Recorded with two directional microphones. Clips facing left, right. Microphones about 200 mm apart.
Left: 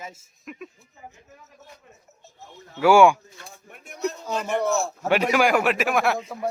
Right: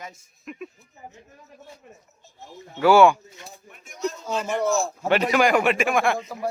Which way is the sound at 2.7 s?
10° left (ahead or behind).